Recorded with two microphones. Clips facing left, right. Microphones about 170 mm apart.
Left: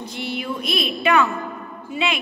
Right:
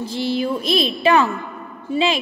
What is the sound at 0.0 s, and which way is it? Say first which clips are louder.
A woman's voice: right 7 dB; 30° right (ahead or behind).